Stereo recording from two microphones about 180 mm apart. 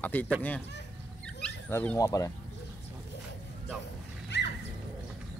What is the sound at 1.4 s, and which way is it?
Dog, 5° left (ahead or behind).